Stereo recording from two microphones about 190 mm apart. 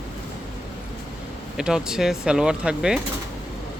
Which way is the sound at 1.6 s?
5° right (ahead or behind).